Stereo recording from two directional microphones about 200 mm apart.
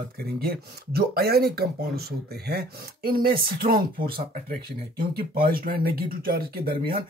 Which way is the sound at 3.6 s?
35° right (ahead or behind).